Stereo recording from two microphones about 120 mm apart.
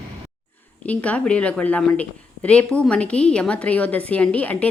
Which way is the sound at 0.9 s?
10° left (ahead or behind).